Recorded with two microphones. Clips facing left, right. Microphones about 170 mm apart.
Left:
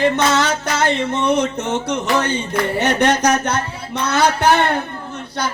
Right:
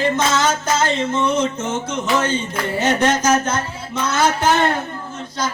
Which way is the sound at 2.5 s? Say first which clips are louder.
Left 1 dB; 65° left (ahead or behind).